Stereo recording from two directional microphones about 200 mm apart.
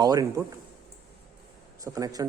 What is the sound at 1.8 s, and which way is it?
Speech, 15° right (ahead or behind).